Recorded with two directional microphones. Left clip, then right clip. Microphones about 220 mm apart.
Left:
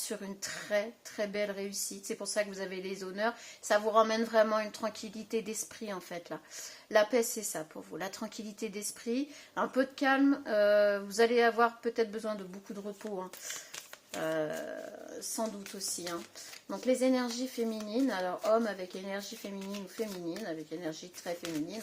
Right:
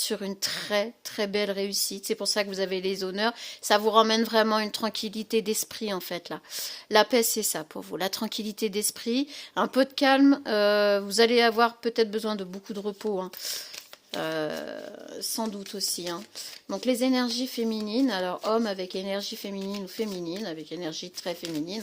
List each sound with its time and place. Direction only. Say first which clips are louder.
0.1 s a woman's voice: right 9 dB; 50° right (ahead or behind)